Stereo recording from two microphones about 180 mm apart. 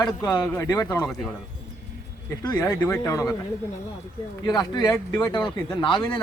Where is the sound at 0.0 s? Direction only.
20° left (ahead or behind).